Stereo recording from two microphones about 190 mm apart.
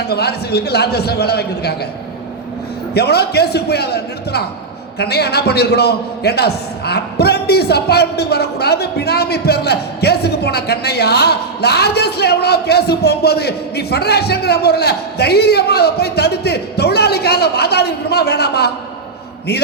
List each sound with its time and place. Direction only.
0.1 s a man's voice: 55° left (ahead or behind)
2.9 s a man's voice: 60° left (ahead or behind)